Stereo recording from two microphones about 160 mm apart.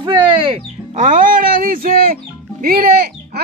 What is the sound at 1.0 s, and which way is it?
Speech, 55° right (ahead or behind).